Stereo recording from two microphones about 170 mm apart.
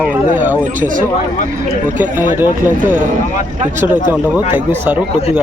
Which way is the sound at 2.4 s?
10° right (ahead or behind).